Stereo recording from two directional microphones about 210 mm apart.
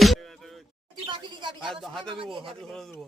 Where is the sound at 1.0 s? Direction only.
20° right (ahead or behind).